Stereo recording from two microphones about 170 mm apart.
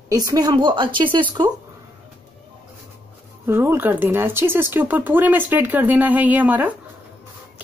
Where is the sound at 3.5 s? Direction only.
15° right (ahead or behind).